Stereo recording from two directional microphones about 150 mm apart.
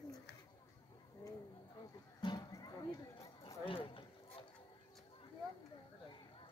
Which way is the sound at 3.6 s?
35° left (ahead or behind).